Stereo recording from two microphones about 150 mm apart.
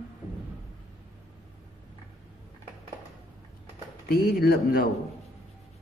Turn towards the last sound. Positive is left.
turn(degrees=85)